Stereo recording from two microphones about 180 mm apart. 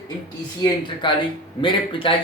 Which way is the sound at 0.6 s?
25° left (ahead or behind).